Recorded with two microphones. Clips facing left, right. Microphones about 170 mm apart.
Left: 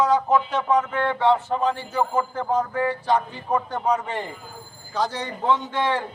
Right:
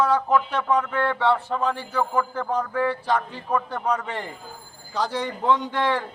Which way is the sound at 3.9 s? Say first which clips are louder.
Left 3 dB; 10° left (ahead or behind).